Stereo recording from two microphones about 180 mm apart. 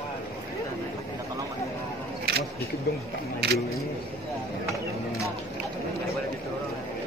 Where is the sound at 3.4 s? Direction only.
65° right (ahead or behind).